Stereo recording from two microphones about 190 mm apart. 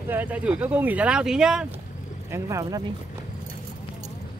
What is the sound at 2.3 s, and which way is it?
Speech, 15° right (ahead or behind).